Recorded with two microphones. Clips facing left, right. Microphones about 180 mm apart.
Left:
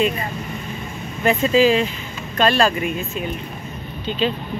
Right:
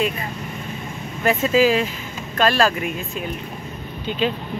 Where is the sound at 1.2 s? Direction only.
5° right (ahead or behind).